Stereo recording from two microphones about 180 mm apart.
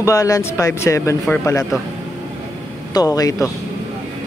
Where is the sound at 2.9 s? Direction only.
20° left (ahead or behind).